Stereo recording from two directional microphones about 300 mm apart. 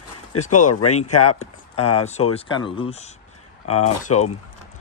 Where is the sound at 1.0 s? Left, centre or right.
Left.